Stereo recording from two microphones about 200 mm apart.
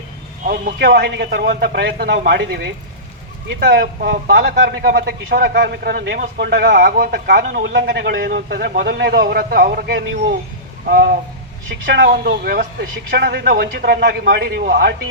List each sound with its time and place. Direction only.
0.4 s speech: 45° right (ahead or behind)